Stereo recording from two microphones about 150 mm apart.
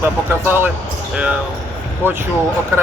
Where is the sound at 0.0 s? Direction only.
15° right (ahead or behind).